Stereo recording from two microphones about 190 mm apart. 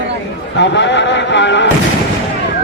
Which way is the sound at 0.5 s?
70° left (ahead or behind).